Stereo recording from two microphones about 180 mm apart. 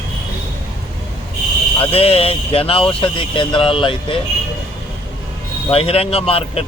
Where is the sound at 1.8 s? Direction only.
35° left (ahead or behind).